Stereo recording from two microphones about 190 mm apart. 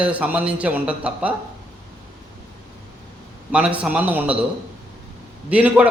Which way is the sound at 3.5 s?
5° right (ahead or behind).